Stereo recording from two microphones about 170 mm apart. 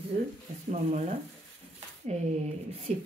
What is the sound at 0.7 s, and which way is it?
Speech, 45° right (ahead or behind).